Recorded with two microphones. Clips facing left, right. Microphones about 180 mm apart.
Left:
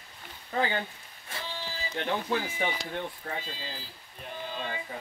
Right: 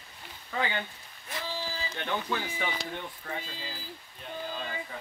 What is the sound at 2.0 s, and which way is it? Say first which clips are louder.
Speech: left 3 dB; 30° left (ahead or behind).